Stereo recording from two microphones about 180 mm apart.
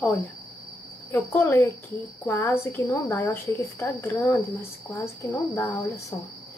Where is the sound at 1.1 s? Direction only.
15° left (ahead or behind).